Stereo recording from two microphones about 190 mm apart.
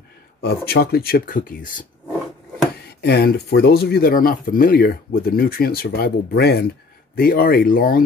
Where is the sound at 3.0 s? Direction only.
60° left (ahead or behind).